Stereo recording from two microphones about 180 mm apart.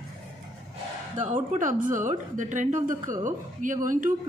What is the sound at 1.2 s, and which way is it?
Speech, 45° right (ahead or behind).